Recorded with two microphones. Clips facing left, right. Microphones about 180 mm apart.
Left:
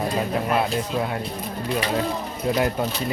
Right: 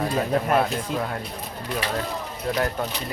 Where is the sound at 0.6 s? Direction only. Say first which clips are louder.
Left 1 dB; 10° left (ahead or behind).